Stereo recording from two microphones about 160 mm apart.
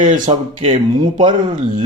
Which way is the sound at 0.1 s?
40° right (ahead or behind).